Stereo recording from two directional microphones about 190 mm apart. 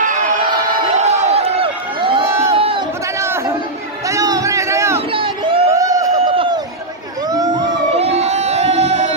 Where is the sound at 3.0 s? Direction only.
15° right (ahead or behind).